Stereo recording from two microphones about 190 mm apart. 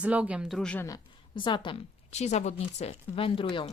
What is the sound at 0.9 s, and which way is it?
A woman's voice, 25° left (ahead or behind).